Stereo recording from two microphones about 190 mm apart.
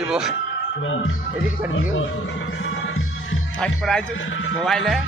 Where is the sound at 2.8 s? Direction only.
90° left.